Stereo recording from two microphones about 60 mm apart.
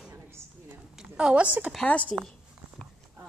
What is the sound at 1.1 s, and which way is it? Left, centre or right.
Speech, centre.